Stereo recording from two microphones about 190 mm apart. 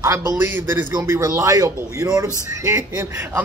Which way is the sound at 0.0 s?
15° right (ahead or behind).